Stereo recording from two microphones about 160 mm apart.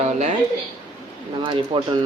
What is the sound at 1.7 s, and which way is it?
Speech, 30° right (ahead or behind).